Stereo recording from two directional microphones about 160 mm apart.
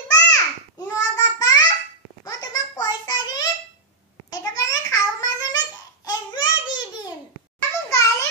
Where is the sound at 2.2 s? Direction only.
20° left (ahead or behind).